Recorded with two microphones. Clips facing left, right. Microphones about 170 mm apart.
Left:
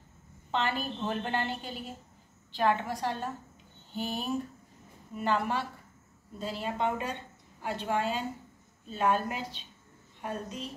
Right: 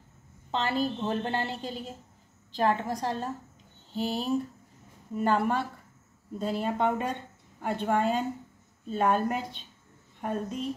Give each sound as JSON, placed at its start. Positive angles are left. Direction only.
{"t": 0.5, "sound": "a woman's voice", "side_deg": -35}
{"t": 5.1, "sound": "speech", "side_deg": -45}